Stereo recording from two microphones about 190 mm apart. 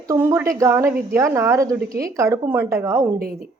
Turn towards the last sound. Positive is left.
turn(degrees=-50)  # may be behind; listen again after turning